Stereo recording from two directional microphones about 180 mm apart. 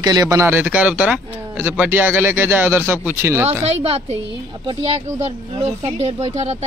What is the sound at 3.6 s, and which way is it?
Speech, 35° right (ahead or behind).